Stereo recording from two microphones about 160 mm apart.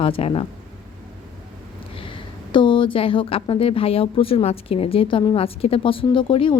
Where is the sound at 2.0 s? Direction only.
30° left (ahead or behind).